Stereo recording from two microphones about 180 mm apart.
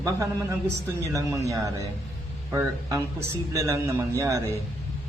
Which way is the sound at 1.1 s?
15° right (ahead or behind).